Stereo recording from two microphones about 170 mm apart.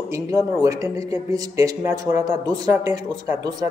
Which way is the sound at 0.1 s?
20° right (ahead or behind).